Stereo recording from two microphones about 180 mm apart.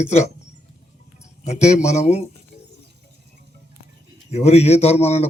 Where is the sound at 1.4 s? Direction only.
40° left (ahead or behind).